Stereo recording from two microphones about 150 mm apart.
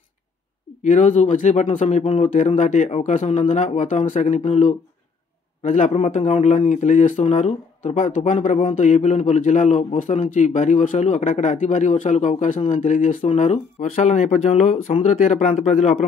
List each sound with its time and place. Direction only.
0.8 s speech: 55° left (ahead or behind)
2.2 s a man's voice: 55° left (ahead or behind)